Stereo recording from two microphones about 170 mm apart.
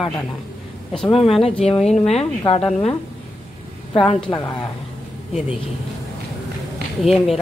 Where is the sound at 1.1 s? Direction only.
35° left (ahead or behind).